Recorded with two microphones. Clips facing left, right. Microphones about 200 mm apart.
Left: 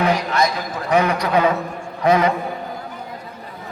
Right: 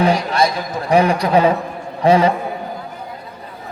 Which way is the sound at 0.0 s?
30° right (ahead or behind).